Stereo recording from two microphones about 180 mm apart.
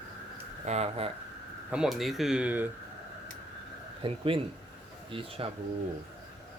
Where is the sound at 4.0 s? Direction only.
30° right (ahead or behind).